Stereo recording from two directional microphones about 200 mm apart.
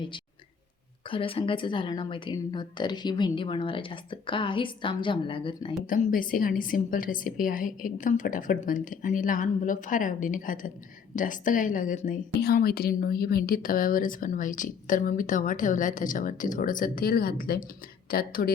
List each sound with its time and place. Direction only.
1.1 s a woman's voice: 25° left (ahead or behind)
5.8 s a woman's voice: 45° left (ahead or behind)